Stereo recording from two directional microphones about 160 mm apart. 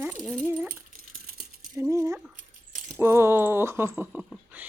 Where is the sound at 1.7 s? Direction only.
20° right (ahead or behind).